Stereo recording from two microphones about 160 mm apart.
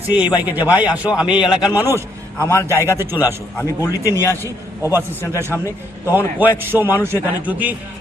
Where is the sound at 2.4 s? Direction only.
15° left (ahead or behind).